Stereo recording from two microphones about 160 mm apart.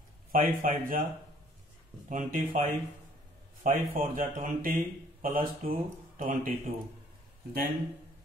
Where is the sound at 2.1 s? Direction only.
55° right (ahead or behind).